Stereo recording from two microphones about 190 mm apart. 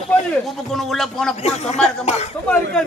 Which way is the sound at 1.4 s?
35° left (ahead or behind).